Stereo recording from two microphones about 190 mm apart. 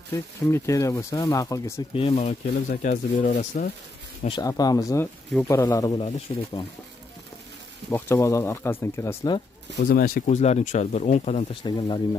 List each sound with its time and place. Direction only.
0.1 s speech: 15° left (ahead or behind)
2.0 s speech: 35° left (ahead or behind)
4.3 s speech: 20° left (ahead or behind)
7.9 s speech: 15° left (ahead or behind)
9.8 s speech: 50° left (ahead or behind); by 12.2 s 25° left (ahead or behind)